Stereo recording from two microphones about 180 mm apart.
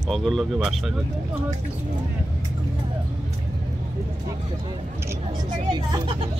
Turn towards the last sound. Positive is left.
turn(degrees=-30)  # may be behind; listen again after turning